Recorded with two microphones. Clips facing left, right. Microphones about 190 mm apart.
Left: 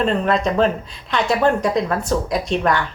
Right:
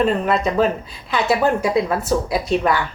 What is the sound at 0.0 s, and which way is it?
Speech, 5° right (ahead or behind).